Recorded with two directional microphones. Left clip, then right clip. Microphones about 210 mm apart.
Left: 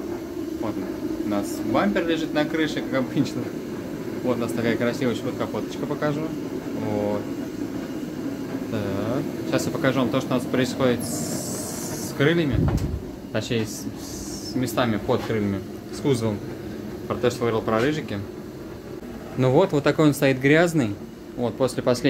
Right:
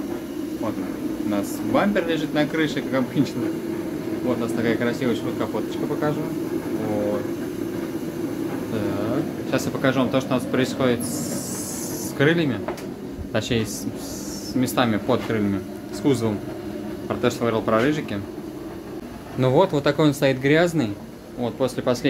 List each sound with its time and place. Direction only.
1.3 s speech: centre (ahead or behind)
4.6 s speech: 20° left (ahead or behind)
9.5 s speech: centre (ahead or behind)
14.6 s speech: 10° right (ahead or behind)
19.4 s speech: centre (ahead or behind)